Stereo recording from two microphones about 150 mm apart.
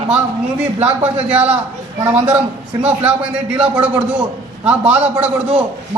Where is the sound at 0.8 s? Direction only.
10° right (ahead or behind).